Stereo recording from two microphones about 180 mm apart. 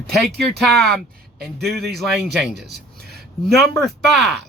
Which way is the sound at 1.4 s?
Centre (ahead or behind).